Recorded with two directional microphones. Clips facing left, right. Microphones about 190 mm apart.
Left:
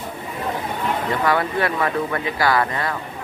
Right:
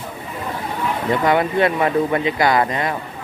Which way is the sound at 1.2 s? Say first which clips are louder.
Right 5 dB; 20° right (ahead or behind).